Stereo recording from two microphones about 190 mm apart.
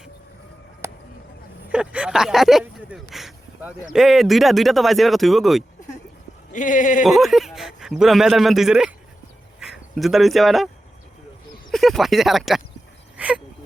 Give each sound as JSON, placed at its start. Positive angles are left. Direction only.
{"t": 0.8, "sound": "a sound", "side_deg": -15}
{"t": 1.7, "sound": "speech", "side_deg": -5}
{"t": 6.5, "sound": "speech", "side_deg": 45}
{"t": 7.0, "sound": "speech", "side_deg": 0}
{"t": 11.7, "sound": "speech", "side_deg": 0}
{"t": 13.1, "sound": "a sound", "side_deg": -5}